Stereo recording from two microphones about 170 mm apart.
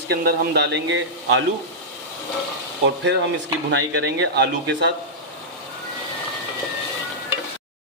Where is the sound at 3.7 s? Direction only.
90° right.